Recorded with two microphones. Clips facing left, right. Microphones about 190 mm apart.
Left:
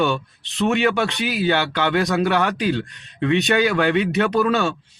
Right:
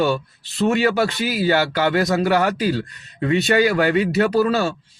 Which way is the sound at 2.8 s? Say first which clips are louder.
Even; 5° right (ahead or behind).